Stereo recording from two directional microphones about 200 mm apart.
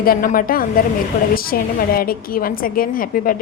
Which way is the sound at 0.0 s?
45° left (ahead or behind).